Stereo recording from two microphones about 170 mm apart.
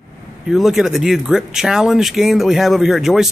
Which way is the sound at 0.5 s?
Centre (ahead or behind).